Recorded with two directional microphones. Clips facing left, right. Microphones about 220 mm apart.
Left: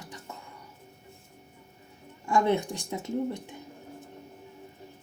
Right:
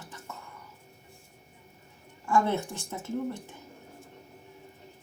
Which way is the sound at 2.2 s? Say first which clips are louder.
Left 2 dB; 15° left (ahead or behind).